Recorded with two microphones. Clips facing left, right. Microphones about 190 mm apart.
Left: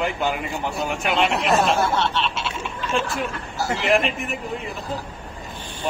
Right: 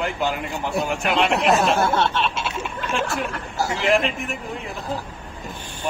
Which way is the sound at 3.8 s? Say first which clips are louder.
Even; centre (ahead or behind).